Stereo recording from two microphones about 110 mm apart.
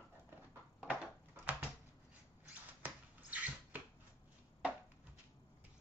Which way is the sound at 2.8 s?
15° right (ahead or behind).